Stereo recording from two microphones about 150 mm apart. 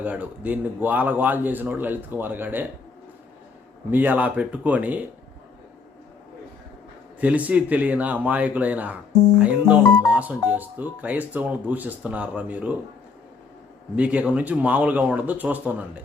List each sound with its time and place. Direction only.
0.0 s a man's voice: 10° right (ahead or behind)
3.9 s a man's voice: 10° right (ahead or behind)
7.2 s a man's voice: 10° right (ahead or behind)
13.9 s a man's voice: 10° right (ahead or behind)